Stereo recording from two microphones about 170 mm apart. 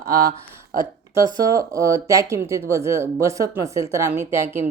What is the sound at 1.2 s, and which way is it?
Speech, 20° right (ahead or behind).